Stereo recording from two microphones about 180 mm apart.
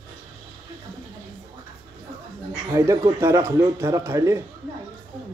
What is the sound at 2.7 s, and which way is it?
Speech, 15° right (ahead or behind).